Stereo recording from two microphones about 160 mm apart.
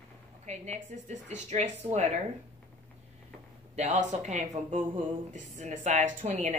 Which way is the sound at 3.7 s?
45° right (ahead or behind).